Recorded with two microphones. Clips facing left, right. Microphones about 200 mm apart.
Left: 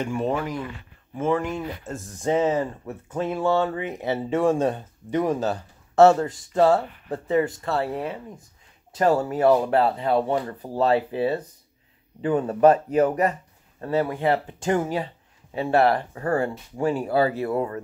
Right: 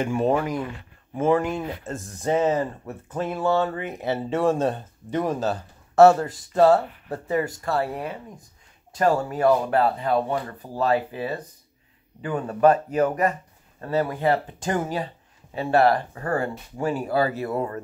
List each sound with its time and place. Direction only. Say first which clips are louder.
0.2 s speech: right 3 dB; 40° right (ahead or behind)
1.9 s speech: left 1 dB; 15° left (ahead or behind)
8.9 s speech: left 1 dB; 25° left (ahead or behind)